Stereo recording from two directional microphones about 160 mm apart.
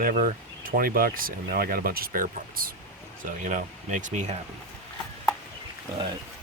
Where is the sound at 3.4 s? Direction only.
50° right (ahead or behind).